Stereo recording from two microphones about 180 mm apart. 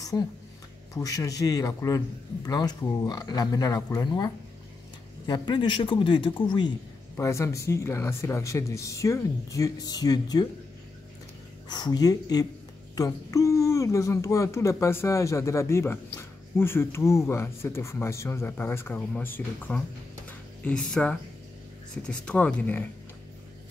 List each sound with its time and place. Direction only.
0.1 s a man's voice: 25° left (ahead or behind)
11.7 s a man's voice: 25° left (ahead or behind)
20.2 s a sound: 5° left (ahead or behind)
21.9 s speech: 5° left (ahead or behind)